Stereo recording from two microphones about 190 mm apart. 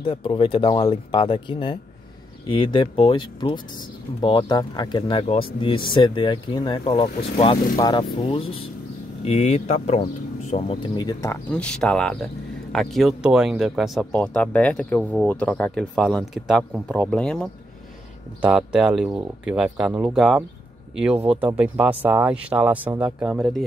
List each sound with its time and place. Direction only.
0.0 s speech: 25° left (ahead or behind); by 23.6 s 5° right (ahead or behind)